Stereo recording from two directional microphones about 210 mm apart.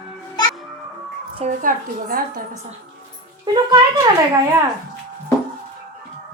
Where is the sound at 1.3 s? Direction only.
35° right (ahead or behind).